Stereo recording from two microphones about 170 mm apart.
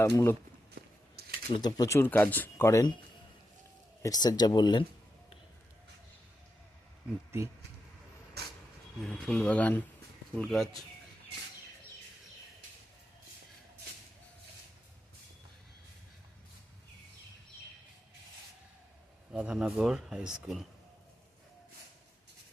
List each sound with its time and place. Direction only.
0.0 s speech: 15° left (ahead or behind)
0.8 s a sound: 65° right (ahead or behind)
1.5 s speech: 25° left (ahead or behind)
4.0 s speech: 20° left (ahead or behind)
7.3 s speech: 15° right (ahead or behind)
8.4 s vehicle: 70° right (ahead or behind)
9.0 s speech: 5° left (ahead or behind)
19.3 s speech: 5° right (ahead or behind)